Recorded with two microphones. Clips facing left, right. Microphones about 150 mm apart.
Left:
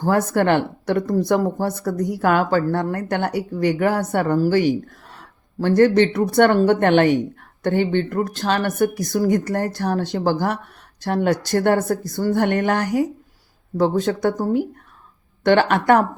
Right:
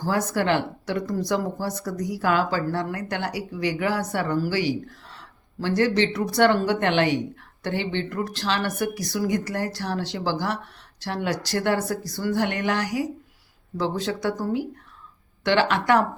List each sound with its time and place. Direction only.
0.0 s speech: 55° left (ahead or behind)